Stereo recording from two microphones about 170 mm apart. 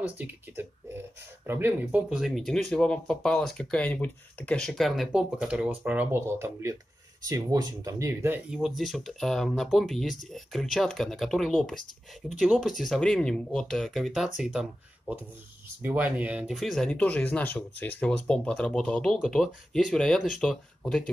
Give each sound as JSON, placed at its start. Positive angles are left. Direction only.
{"t": 0.0, "sound": "speech", "side_deg": -10}
{"t": 8.5, "sound": "speech", "side_deg": 0}